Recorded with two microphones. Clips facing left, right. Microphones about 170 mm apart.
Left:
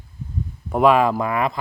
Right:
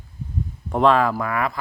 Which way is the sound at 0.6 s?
5° left (ahead or behind).